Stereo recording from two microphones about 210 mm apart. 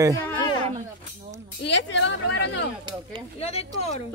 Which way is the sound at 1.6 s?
55° left (ahead or behind).